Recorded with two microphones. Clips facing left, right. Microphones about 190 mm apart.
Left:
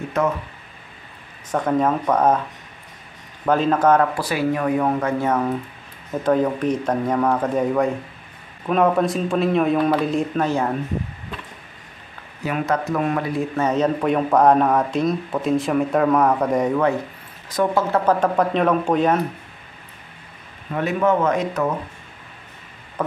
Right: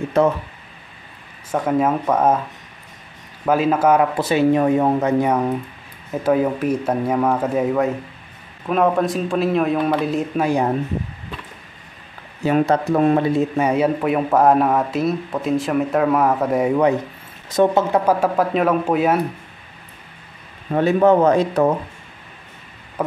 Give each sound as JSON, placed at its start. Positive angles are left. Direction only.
{"t": 1.5, "sound": "a man's voice", "side_deg": -5}
{"t": 3.4, "sound": "a man's voice", "side_deg": -10}
{"t": 4.1, "sound": "a man's voice", "side_deg": -25}
{"t": 12.4, "sound": "speech", "side_deg": -30}
{"t": 13.6, "sound": "a man's voice", "side_deg": -10}
{"t": 17.5, "sound": "speech", "side_deg": -25}
{"t": 18.0, "sound": "a man's voice", "side_deg": -5}
{"t": 20.7, "sound": "speech", "side_deg": -35}
{"t": 23.0, "sound": "a sound", "side_deg": -10}